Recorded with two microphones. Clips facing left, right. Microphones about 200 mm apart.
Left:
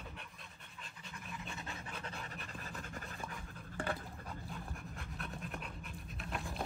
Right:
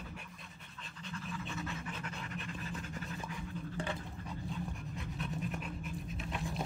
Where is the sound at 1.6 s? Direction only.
35° left (ahead or behind).